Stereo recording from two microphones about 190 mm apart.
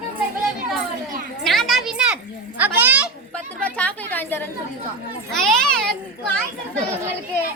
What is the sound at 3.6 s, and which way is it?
A woman's voice, 5° left (ahead or behind).